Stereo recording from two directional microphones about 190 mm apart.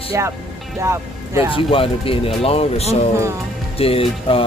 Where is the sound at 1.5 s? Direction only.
30° left (ahead or behind).